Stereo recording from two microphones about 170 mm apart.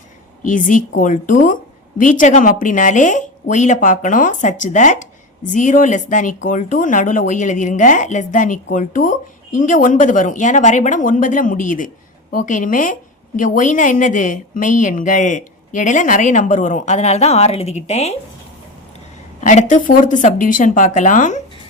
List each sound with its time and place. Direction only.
0.4 s a woman's voice: 50° left (ahead or behind)
19.4 s a woman's voice: 45° left (ahead or behind)